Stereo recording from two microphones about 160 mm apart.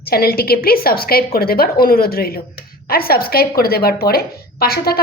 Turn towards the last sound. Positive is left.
turn(degrees=75)  # may be behind; listen again after turning